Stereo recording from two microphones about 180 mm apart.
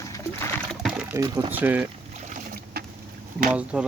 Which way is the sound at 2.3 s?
55° right (ahead or behind).